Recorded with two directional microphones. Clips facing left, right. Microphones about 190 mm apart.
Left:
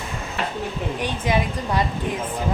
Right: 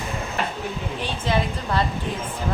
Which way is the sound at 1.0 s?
15° left (ahead or behind).